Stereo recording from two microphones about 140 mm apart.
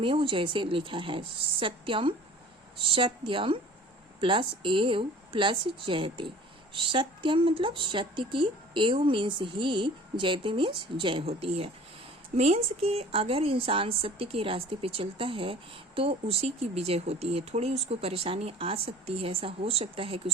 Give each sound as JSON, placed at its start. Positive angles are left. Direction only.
{"t": 0.0, "sound": "a woman's voice", "side_deg": -40}